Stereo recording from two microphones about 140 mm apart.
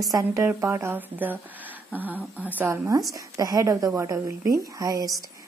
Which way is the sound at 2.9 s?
25° right (ahead or behind).